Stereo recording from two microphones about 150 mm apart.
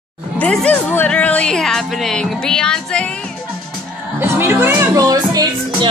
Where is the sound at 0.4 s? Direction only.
5° left (ahead or behind).